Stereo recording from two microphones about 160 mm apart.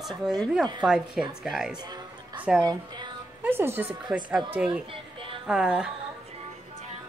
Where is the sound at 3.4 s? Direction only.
15° right (ahead or behind).